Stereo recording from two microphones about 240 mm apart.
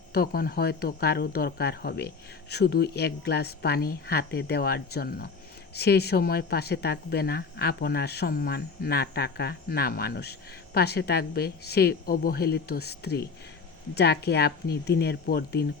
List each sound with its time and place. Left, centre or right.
0.1 s speech: left